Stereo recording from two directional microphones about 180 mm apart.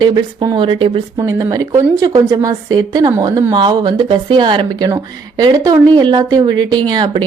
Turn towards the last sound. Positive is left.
turn(degrees=-25)  # may be behind; listen again after turning